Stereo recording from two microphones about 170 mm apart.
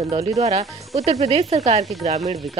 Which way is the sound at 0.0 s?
40° right (ahead or behind).